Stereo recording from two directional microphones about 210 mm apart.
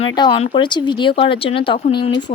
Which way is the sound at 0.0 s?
25° left (ahead or behind).